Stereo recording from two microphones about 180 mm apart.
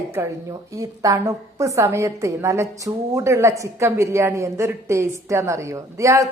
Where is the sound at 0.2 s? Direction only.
15° right (ahead or behind).